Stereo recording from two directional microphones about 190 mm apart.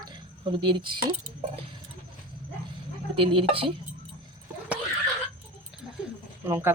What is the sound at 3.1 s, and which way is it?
Speech, 30° right (ahead or behind).